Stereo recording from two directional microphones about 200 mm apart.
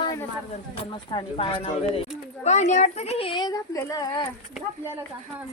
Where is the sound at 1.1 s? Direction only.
25° left (ahead or behind).